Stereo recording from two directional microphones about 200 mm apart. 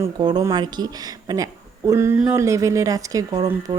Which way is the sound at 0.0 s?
20° right (ahead or behind).